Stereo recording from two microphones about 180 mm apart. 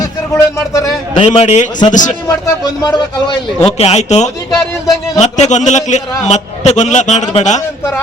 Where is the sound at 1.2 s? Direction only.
35° left (ahead or behind).